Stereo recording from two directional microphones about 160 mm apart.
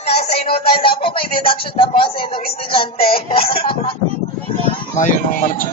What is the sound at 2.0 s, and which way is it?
Speech, 35° left (ahead or behind).